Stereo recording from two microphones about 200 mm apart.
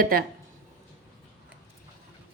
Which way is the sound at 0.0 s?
45° right (ahead or behind).